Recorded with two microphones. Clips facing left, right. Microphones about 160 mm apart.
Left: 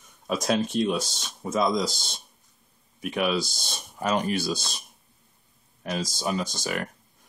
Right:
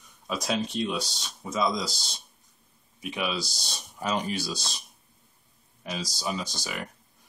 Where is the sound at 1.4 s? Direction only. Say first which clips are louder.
Left 3 dB; 45° left (ahead or behind).